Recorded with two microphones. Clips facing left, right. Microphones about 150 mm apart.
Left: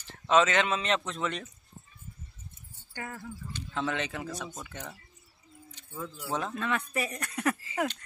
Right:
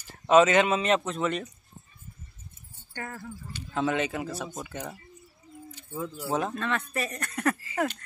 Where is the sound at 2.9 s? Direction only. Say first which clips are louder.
Right 2 dB; 5° left (ahead or behind).